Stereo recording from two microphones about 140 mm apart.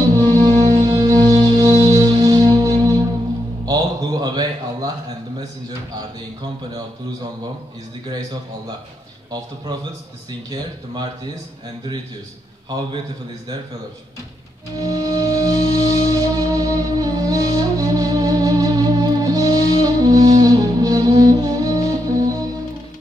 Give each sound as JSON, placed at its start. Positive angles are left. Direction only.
{"t": 0.2, "sound": "music", "side_deg": -30}
{"t": 3.6, "sound": "a sound", "side_deg": -30}
{"t": 14.8, "sound": "music", "side_deg": -25}